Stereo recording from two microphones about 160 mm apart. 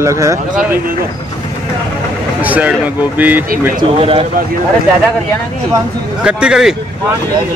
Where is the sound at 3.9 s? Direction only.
35° right (ahead or behind).